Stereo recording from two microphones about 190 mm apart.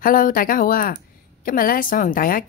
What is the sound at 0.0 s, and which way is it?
Speech, 45° left (ahead or behind).